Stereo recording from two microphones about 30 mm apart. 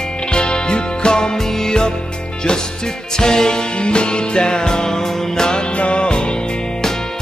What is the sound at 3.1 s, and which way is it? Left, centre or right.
Music, left.